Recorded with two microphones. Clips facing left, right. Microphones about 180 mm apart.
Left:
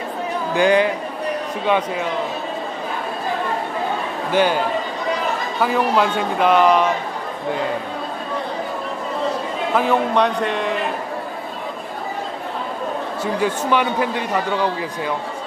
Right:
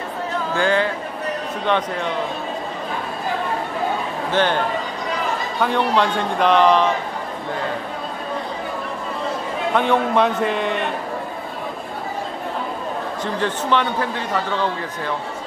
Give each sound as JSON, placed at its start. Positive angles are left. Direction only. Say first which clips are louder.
{"t": 0.6, "sound": "a man's voice", "louder": "left 4 dB", "side_deg": 15}
{"t": 4.3, "sound": "a man's voice", "louder": "left 2 dB", "side_deg": 10}
{"t": 9.8, "sound": "a man's voice", "louder": "even", "side_deg": 0}
{"t": 13.2, "sound": "a man's voice", "louder": "left 3 dB", "side_deg": 10}